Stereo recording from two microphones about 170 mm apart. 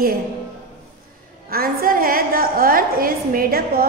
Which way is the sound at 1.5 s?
60° right (ahead or behind).